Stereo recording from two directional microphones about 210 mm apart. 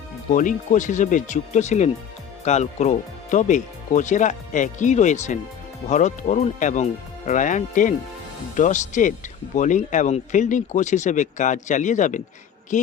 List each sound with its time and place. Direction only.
0.3 s speech: 35° left (ahead or behind)